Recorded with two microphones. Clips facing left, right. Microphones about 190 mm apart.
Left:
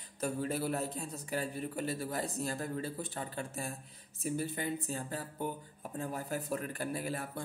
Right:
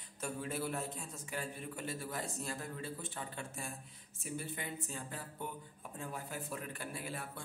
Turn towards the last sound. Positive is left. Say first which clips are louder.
# left 6 dB
turn(degrees=40)  # may be behind; listen again after turning